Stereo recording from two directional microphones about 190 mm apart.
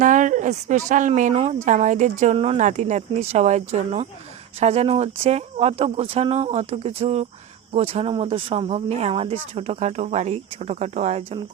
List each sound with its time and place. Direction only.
0.0 s speech: 40° right (ahead or behind)